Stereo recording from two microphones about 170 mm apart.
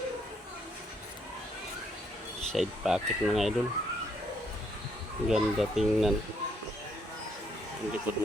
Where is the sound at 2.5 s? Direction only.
Centre (ahead or behind).